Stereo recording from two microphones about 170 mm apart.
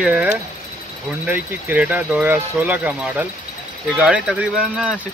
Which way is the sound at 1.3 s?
10° right (ahead or behind).